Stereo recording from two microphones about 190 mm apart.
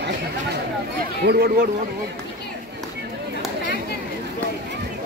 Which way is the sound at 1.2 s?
60° right (ahead or behind).